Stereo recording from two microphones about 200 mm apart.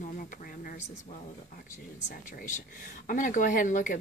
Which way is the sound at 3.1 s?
40° left (ahead or behind).